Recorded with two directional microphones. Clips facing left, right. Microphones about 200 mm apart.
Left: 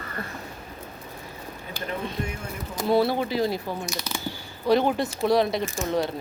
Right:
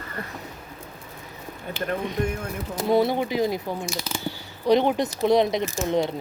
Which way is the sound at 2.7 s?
20° right (ahead or behind).